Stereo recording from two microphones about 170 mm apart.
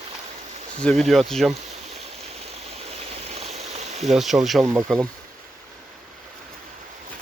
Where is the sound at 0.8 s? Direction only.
Centre (ahead or behind).